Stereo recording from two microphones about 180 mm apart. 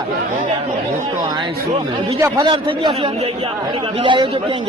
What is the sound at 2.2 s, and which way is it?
Speech, 25° right (ahead or behind).